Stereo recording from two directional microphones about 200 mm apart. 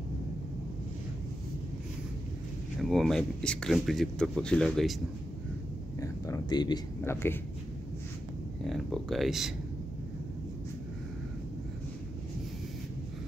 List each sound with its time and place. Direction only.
2.8 s speech: centre (ahead or behind)
5.9 s a sound: 15° left (ahead or behind)
8.6 s speech: centre (ahead or behind)